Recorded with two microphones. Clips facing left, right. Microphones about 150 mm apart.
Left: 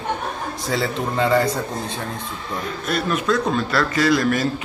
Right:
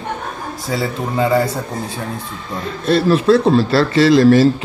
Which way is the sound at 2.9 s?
30° right (ahead or behind).